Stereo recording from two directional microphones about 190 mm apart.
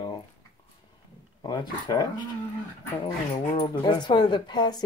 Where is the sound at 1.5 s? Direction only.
20° left (ahead or behind).